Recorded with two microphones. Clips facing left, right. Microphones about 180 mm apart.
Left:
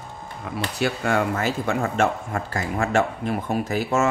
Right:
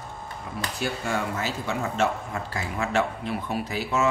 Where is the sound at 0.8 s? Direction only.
60° left (ahead or behind).